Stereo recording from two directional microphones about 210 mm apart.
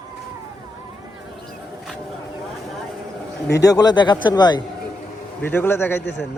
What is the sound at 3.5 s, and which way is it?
Speech, 15° left (ahead or behind).